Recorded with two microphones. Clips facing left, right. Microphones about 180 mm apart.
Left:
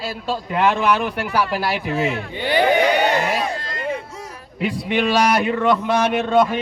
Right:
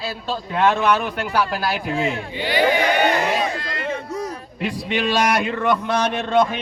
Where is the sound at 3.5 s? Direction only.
45° left (ahead or behind).